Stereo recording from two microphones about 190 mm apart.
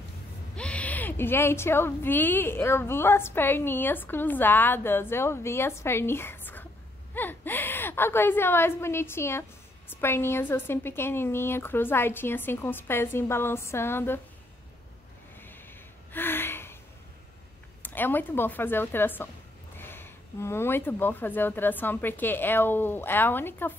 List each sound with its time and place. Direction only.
0.6 s a woman's voice: 5° left (ahead or behind)
16.1 s gasp: 10° left (ahead or behind)
17.8 s a woman's voice: 10° left (ahead or behind)